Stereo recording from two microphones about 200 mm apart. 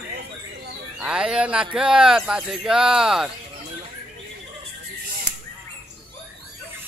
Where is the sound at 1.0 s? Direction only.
5° right (ahead or behind).